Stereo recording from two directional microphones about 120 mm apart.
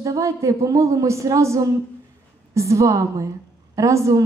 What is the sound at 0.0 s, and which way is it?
A woman's voice, 25° right (ahead or behind).